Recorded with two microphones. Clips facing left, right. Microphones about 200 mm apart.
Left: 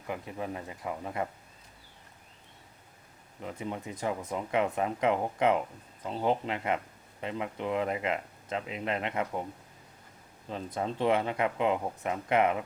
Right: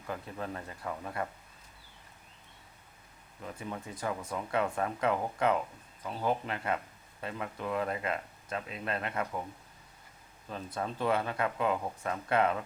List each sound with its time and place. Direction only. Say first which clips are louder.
0.1 s speech: left 2 dB; 15° left (ahead or behind)
3.4 s speech: left 4 dB; 20° left (ahead or behind)
10.8 s speech: left 3 dB; 20° left (ahead or behind)